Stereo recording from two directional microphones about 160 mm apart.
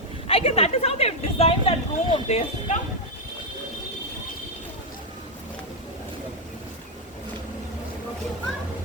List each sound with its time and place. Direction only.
0.3 s speech: 35° left (ahead or behind)